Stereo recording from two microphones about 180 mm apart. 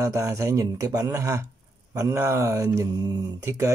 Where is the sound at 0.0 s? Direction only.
15° right (ahead or behind).